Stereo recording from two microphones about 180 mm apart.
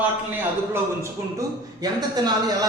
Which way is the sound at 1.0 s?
20° right (ahead or behind).